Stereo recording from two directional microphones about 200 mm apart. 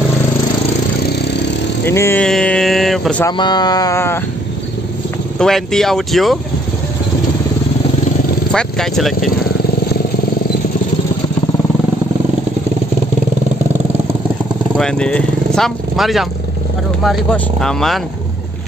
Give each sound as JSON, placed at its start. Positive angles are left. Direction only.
{"t": 1.9, "sound": "speech", "side_deg": 10}
{"t": 3.3, "sound": "speech", "side_deg": 20}
{"t": 5.4, "sound": "speech", "side_deg": 0}
{"t": 8.5, "sound": "speech", "side_deg": 5}
{"t": 14.8, "sound": "speech", "side_deg": 5}